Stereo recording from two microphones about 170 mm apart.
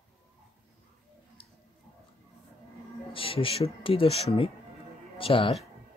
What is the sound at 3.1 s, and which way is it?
Speech, 30° left (ahead or behind).